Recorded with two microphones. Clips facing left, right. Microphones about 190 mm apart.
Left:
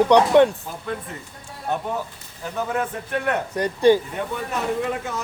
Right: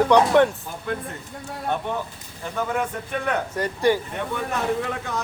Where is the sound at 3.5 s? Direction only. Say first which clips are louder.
Left 6 dB; 20° left (ahead or behind).